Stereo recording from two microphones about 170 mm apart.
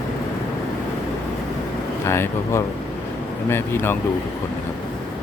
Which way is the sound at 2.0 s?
15° left (ahead or behind).